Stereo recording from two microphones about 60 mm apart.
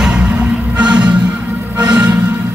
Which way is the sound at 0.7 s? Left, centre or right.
Right.